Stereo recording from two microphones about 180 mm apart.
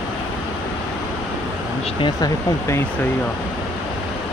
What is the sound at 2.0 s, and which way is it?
Speech, 20° left (ahead or behind).